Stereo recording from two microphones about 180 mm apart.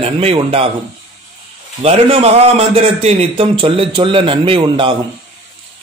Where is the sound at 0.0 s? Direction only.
35° right (ahead or behind).